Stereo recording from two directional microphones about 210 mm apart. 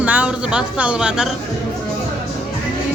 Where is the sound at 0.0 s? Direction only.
5° right (ahead or behind).